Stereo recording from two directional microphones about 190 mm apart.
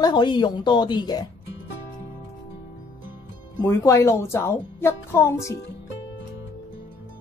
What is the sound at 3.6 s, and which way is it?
Speech, 15° left (ahead or behind).